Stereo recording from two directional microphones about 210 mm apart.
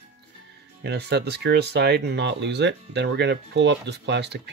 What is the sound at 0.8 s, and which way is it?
Speech, 55° right (ahead or behind).